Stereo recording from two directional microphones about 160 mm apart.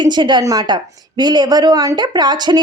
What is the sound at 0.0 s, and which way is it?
A woman's voice, 30° right (ahead or behind).